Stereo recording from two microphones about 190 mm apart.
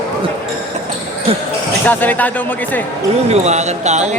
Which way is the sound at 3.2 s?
35° right (ahead or behind).